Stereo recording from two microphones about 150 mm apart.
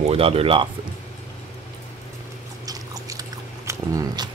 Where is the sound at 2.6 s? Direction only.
25° right (ahead or behind).